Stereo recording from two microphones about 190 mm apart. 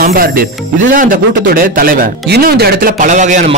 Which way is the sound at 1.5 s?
45° right (ahead or behind).